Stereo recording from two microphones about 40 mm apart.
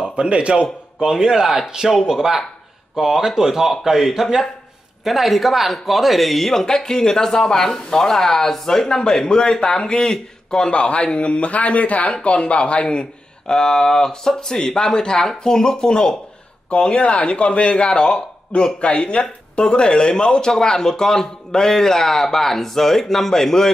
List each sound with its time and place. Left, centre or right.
0.1 s a man's voice: right
1.1 s a man's voice: centre
10.7 s speech: left; by 23.7 s centre